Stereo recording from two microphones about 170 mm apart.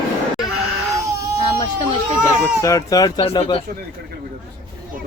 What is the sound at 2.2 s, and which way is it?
Speech, 20° left (ahead or behind).